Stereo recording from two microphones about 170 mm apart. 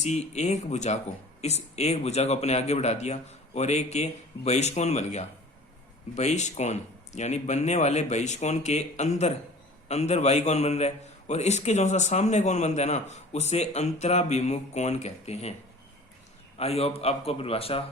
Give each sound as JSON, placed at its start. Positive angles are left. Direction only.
{"t": 0.0, "sound": "a man's voice", "side_deg": 40}
{"t": 16.6, "sound": "a man's voice", "side_deg": 35}